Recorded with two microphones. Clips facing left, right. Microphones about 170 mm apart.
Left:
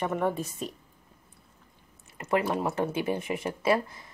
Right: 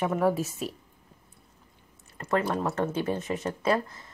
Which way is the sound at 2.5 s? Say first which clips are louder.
Even; 10° left (ahead or behind).